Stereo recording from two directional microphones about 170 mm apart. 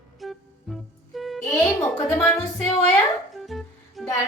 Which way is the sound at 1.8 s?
5° left (ahead or behind).